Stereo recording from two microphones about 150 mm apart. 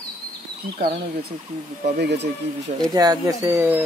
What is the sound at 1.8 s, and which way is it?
Speech, 90° right.